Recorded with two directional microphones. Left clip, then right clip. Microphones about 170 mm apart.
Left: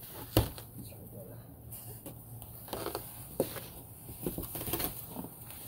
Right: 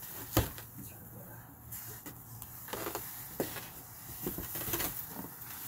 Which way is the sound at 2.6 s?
45° left (ahead or behind).